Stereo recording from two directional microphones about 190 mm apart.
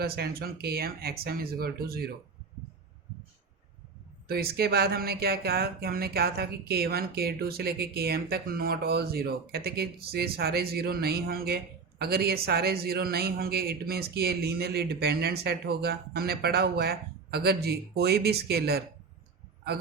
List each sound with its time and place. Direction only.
0.0 s speech: 55° right (ahead or behind)
4.3 s speech: 55° right (ahead or behind)